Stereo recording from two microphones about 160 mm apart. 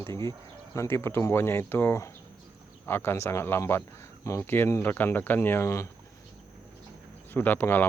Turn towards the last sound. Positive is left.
turn(degrees=10)  # may be behind; listen again after turning